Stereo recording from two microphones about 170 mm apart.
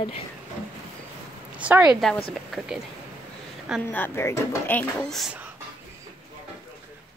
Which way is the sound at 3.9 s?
15° left (ahead or behind).